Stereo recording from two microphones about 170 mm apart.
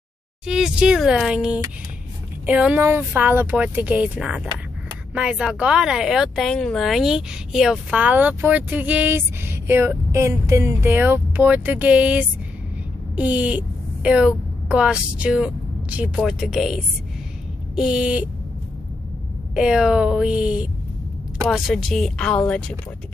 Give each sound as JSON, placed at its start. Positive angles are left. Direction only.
{"t": 0.5, "sound": "speech", "side_deg": -5}
{"t": 19.5, "sound": "speech", "side_deg": -5}